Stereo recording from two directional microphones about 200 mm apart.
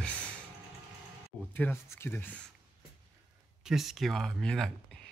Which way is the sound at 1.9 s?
10° left (ahead or behind).